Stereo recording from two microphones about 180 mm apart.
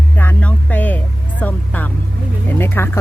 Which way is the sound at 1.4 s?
10° left (ahead or behind).